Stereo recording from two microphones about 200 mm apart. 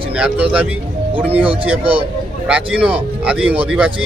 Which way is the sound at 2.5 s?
5° right (ahead or behind).